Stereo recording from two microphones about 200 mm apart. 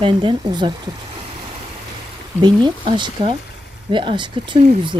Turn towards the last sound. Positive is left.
turn(degrees=-30)  # may be behind; listen again after turning